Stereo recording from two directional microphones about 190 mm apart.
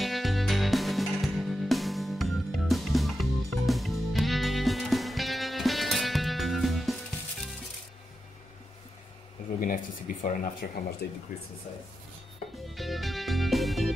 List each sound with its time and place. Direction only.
0.0 s music: centre (ahead or behind)
9.6 s speech: 45° left (ahead or behind)
11.0 s speech: 55° left (ahead or behind)
12.6 s music: centre (ahead or behind)